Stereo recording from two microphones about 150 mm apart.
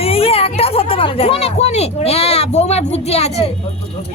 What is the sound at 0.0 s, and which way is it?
Speech, 40° left (ahead or behind).